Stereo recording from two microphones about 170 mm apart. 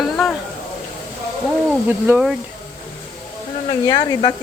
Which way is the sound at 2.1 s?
5° right (ahead or behind).